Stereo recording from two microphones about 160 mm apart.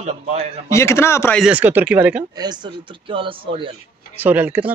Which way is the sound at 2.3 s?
25° right (ahead or behind).